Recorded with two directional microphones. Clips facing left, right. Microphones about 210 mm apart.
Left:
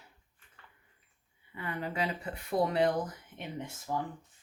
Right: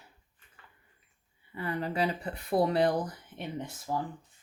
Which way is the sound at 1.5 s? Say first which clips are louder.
Right 4 dB; 35° right (ahead or behind).